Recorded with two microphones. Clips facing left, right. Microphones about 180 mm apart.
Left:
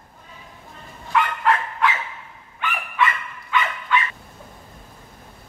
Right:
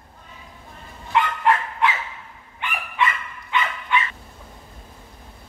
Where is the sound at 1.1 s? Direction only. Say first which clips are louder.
Even; 20° right (ahead or behind).